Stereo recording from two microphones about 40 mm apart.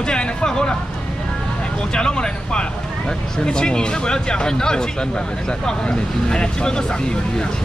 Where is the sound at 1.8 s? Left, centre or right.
Left.